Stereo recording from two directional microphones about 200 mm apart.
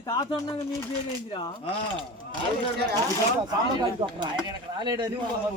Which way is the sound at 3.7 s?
25° right (ahead or behind).